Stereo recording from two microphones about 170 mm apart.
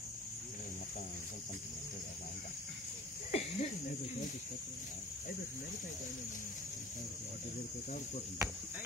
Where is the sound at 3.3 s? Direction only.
40° left (ahead or behind).